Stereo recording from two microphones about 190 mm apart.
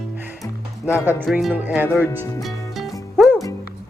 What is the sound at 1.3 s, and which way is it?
Speech, 5° right (ahead or behind).